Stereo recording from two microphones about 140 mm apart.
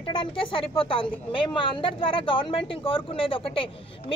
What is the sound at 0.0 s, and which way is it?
A woman's voice, 40° left (ahead or behind).